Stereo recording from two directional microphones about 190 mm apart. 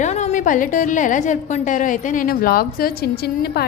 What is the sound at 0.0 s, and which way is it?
A woman's voice, 35° left (ahead or behind).